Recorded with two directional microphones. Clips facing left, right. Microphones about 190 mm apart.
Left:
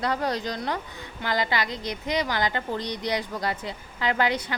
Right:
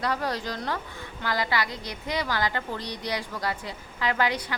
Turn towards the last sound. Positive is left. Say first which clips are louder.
# left 2 dB
turn(degrees=25)  # may be behind; listen again after turning